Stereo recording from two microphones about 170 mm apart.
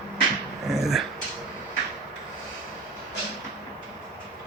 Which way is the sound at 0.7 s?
Centre (ahead or behind).